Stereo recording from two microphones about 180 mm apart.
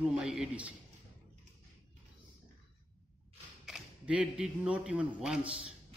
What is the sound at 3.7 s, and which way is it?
Speech, 5° right (ahead or behind).